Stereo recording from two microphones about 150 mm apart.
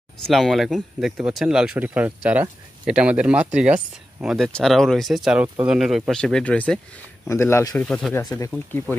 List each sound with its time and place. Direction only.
0.2 s speech: centre (ahead or behind); by 7.8 s 15° left (ahead or behind)
7.8 s speech: 5° left (ahead or behind)
8.1 s speech: 20° left (ahead or behind)